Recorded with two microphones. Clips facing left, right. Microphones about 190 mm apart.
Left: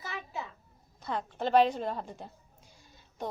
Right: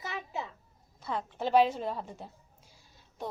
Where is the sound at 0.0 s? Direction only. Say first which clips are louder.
Right 2 dB; 20° right (ahead or behind).